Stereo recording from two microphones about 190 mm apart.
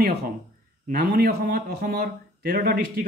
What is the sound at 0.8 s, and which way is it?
Speech, 55° right (ahead or behind).